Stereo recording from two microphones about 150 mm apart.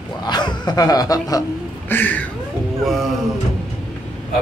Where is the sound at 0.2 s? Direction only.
30° left (ahead or behind).